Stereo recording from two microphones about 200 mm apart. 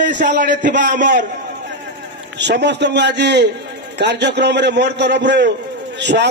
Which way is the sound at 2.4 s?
60° right (ahead or behind).